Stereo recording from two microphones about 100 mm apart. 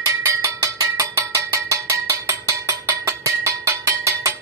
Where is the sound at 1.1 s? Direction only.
30° right (ahead or behind).